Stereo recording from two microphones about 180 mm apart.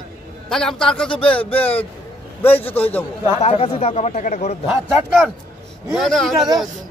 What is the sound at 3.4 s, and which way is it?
A man's voice, 35° left (ahead or behind).